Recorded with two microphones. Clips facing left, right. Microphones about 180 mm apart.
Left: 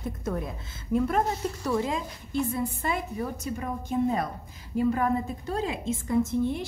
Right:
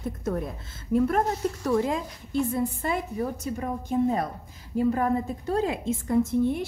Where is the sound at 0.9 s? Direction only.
50° right (ahead or behind).